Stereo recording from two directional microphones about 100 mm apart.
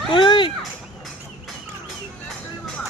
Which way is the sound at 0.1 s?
55° left (ahead or behind).